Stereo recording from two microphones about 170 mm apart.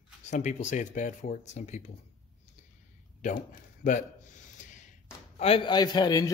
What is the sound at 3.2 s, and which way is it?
Speech, 50° left (ahead or behind).